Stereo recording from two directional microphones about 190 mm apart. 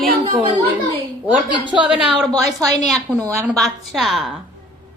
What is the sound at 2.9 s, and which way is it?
A woman's voice, 5° left (ahead or behind).